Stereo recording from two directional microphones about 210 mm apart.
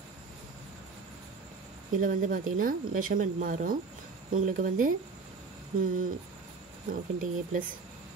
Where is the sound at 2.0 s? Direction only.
40° right (ahead or behind).